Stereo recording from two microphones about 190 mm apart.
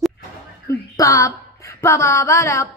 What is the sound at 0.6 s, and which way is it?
Speech, 15° left (ahead or behind).